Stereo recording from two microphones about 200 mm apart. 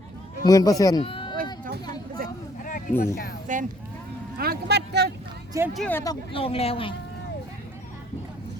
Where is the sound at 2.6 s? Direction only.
45° left (ahead or behind).